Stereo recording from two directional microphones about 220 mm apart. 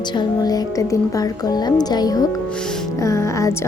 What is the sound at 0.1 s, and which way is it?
Speech, 20° left (ahead or behind).